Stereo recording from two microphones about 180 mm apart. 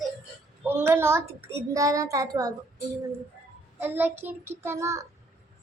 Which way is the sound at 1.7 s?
20° right (ahead or behind).